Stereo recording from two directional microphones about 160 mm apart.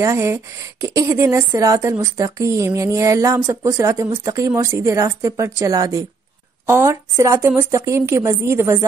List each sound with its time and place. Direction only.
0.0 s a woman's voice: 15° right (ahead or behind)